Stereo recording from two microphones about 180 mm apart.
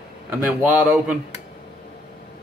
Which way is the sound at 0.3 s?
5° right (ahead or behind).